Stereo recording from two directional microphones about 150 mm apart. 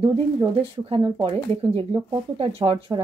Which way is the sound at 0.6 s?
40° right (ahead or behind).